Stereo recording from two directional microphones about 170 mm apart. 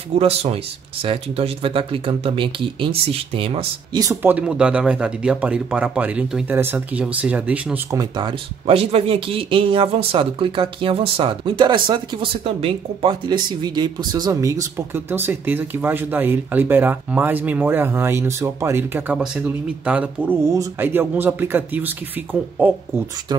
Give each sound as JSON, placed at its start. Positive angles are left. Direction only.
{"t": 0.2, "sound": "speech", "side_deg": -35}
{"t": 8.0, "sound": "speech", "side_deg": -25}